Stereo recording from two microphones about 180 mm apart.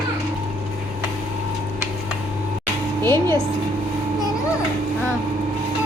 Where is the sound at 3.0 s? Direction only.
15° left (ahead or behind).